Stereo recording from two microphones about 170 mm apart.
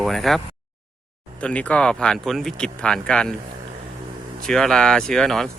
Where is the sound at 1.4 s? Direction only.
5° left (ahead or behind).